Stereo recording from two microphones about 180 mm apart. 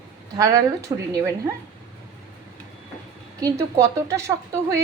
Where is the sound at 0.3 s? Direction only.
15° right (ahead or behind).